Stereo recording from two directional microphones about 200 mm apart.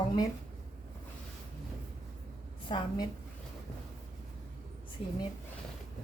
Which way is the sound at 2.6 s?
20° left (ahead or behind).